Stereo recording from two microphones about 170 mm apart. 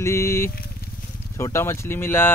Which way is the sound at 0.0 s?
15° left (ahead or behind).